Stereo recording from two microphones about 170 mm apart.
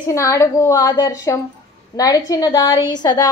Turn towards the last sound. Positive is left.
turn(degrees=25)  # may be behind; listen again after turning